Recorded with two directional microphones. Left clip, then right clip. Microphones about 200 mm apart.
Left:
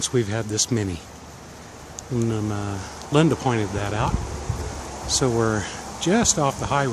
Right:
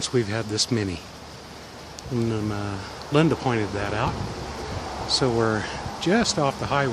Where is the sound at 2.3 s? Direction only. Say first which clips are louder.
Left 1 dB; 10° left (ahead or behind).